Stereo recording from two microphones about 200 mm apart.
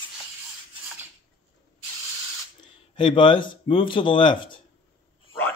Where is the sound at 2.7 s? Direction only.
25° left (ahead or behind).